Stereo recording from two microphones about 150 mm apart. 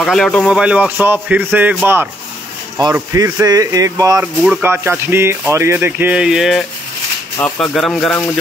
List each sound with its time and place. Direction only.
0.0 s speech: 5° left (ahead or behind)
0.5 s speech: 5° right (ahead or behind)
2.8 s speech: 25° right (ahead or behind)
4.2 s speech: 10° right (ahead or behind)